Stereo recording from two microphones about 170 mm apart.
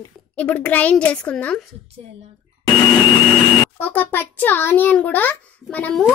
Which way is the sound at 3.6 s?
10° left (ahead or behind).